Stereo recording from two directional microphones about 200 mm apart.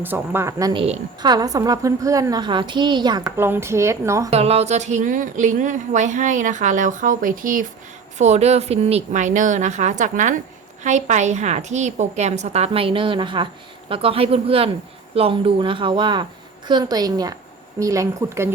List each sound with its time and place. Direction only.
0.0 s a woman's voice: 10° right (ahead or behind)
4.3 s a woman's voice: 30° right (ahead or behind); by 18.4 s 15° right (ahead or behind)